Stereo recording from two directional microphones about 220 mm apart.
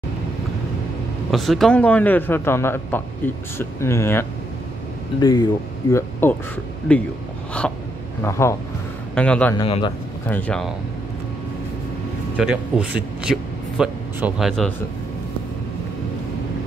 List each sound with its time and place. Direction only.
1.3 s a man's voice: centre (ahead or behind)
7.6 s a man's voice: 5° left (ahead or behind)
9.6 s speech: 25° left (ahead or behind)
10.2 s a man's voice: 5° left (ahead or behind)
12.4 s speech: 5° right (ahead or behind)